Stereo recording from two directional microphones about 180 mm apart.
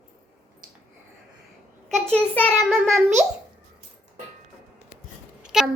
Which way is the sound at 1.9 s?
5° left (ahead or behind).